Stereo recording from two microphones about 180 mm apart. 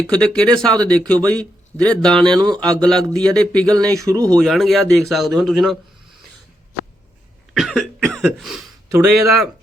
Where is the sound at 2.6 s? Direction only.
20° right (ahead or behind).